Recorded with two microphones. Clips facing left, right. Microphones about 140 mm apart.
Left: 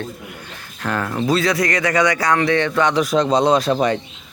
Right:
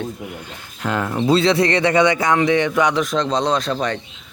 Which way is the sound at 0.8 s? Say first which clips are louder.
Right 1 dB; 15° right (ahead or behind).